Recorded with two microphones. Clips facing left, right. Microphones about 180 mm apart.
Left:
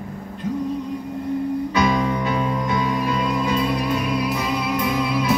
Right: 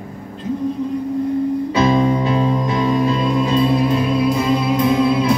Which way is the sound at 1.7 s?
25° right (ahead or behind).